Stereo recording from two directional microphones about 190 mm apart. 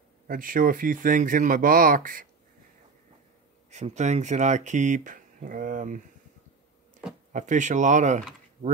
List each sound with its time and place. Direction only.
0.3 s speech: 45° right (ahead or behind)
3.7 s speech: 35° right (ahead or behind)
7.3 s speech: 40° right (ahead or behind)